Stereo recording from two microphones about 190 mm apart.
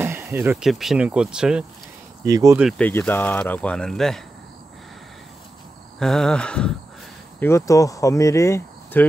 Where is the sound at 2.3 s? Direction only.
20° right (ahead or behind).